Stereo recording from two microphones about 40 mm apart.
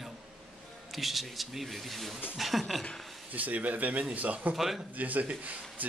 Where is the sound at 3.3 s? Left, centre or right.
Right.